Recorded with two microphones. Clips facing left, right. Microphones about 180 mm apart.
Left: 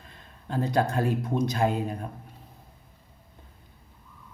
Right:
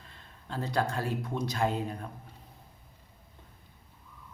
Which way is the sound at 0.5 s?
15° left (ahead or behind).